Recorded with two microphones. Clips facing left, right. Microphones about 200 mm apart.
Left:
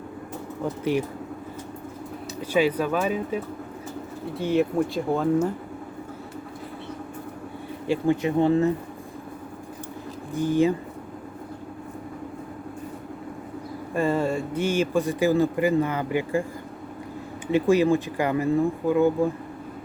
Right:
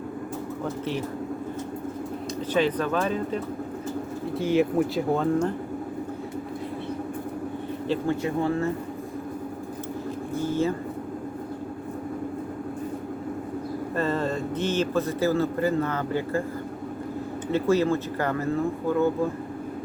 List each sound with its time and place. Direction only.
2.5 s a man's voice: 10° left (ahead or behind)
7.9 s speech: 15° left (ahead or behind)
10.3 s a man's voice: 15° left (ahead or behind)
13.9 s a man's voice: 10° left (ahead or behind)
17.5 s a man's voice: 15° left (ahead or behind)